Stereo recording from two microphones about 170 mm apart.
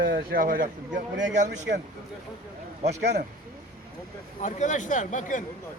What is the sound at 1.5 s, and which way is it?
Speech, 85° right.